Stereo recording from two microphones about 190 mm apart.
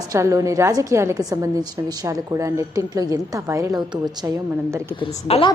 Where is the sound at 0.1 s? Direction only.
15° right (ahead or behind).